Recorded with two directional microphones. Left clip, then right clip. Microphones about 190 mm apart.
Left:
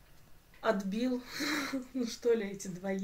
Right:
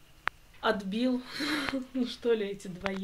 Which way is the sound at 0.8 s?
25° right (ahead or behind).